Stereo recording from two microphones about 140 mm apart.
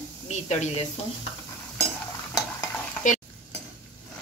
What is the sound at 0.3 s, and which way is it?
Speech, 55° left (ahead or behind).